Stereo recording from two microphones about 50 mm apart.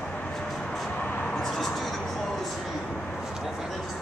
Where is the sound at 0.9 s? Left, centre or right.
Left.